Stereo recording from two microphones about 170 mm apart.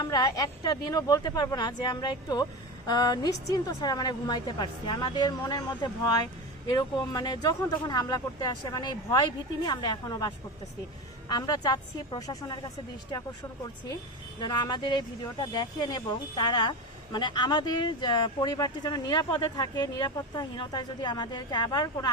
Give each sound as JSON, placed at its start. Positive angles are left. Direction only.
{"t": 0.0, "sound": "speech", "side_deg": 25}
{"t": 14.4, "sound": "speech", "side_deg": 25}